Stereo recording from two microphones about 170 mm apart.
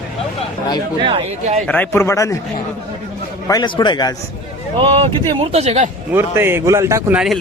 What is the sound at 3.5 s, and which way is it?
Speech, 25° left (ahead or behind).